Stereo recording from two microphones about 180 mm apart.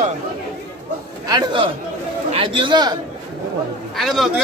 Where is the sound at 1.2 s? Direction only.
25° right (ahead or behind).